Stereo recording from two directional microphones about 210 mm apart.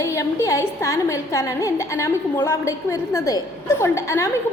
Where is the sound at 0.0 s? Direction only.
15° left (ahead or behind).